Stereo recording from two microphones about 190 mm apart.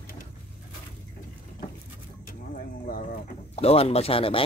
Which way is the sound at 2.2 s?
50° left (ahead or behind).